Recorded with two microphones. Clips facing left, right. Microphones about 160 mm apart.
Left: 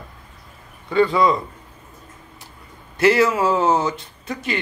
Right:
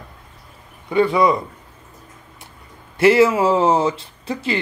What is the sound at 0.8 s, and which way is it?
Speech, 20° right (ahead or behind).